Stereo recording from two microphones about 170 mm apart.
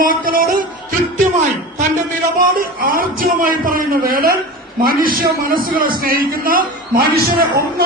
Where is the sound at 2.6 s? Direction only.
55° right (ahead or behind).